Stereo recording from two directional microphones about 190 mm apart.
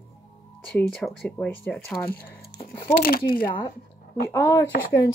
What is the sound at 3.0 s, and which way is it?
Speech, 50° left (ahead or behind).